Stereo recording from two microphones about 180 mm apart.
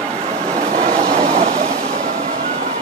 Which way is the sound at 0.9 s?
35° right (ahead or behind).